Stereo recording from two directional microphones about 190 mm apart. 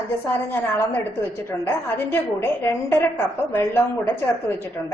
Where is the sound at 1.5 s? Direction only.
10° left (ahead or behind).